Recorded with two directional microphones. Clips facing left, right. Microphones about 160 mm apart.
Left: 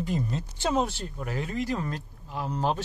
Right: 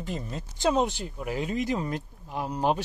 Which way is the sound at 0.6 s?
20° right (ahead or behind).